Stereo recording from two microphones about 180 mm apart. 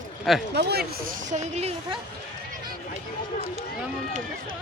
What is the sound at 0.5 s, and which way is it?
Speech, 65° right (ahead or behind).